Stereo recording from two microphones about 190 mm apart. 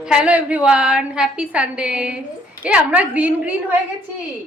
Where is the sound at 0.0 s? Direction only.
5° right (ahead or behind).